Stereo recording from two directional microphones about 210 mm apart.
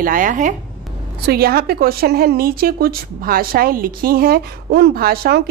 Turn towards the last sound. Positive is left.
turn(degrees=-45)  # may be behind; listen again after turning